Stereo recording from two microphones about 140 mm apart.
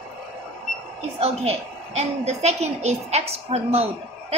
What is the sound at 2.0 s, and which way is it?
A woman's voice, 50° right (ahead or behind).